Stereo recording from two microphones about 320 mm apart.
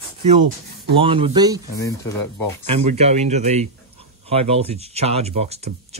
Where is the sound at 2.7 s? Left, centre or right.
Centre.